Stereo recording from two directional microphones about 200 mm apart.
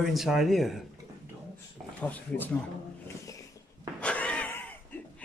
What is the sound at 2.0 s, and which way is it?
Speech, 10° left (ahead or behind).